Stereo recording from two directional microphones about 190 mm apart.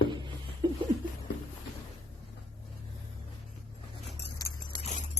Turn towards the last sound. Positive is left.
turn(degrees=40)  # may be behind; listen again after turning